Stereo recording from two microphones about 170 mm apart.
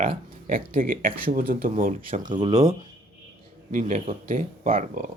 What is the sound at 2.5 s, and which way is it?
Speech, 20° right (ahead or behind).